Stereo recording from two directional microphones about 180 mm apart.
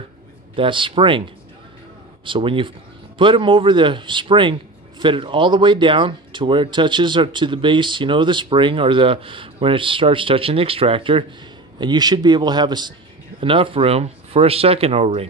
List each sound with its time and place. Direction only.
0.6 s a man's voice: 25° right (ahead or behind)
2.2 s a man's voice: 30° right (ahead or behind)